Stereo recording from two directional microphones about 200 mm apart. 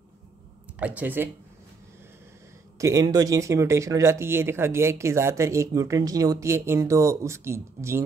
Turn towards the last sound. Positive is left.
turn(degrees=-15)  # may be behind; listen again after turning